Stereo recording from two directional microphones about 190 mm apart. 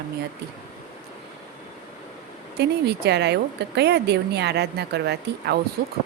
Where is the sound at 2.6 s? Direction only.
60° right (ahead or behind).